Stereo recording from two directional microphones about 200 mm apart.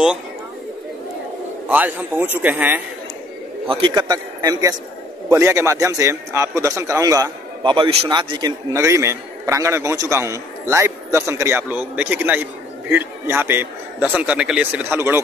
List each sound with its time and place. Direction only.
1.7 s a man's voice: 10° right (ahead or behind)
3.6 s a man's voice: 25° right (ahead or behind)